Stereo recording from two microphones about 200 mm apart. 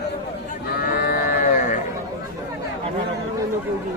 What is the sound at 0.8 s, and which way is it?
Sheep, 45° left (ahead or behind).